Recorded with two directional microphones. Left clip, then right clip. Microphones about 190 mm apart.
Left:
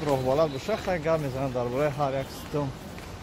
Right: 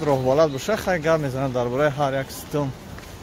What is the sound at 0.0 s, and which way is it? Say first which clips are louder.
Speech: right 6 dB; 45° right (ahead or behind).